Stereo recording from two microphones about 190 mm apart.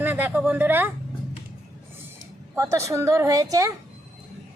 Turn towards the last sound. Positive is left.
turn(degrees=-15)  # may be behind; listen again after turning